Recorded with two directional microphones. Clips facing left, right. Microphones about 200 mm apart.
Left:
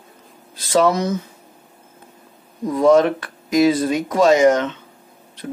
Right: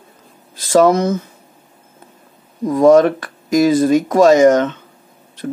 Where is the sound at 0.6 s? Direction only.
45° right (ahead or behind).